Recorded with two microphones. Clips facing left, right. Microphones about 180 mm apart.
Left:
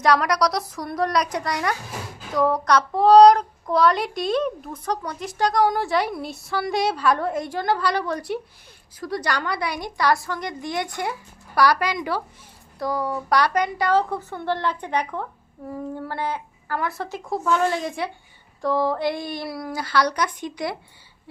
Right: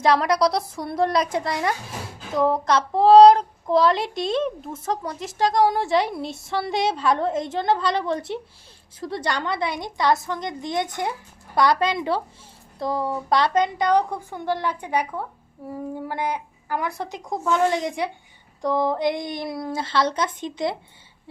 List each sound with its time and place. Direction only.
0.0 s a woman's voice: 25° right (ahead or behind)